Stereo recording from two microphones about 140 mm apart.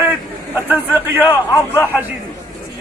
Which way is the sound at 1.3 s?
20° left (ahead or behind).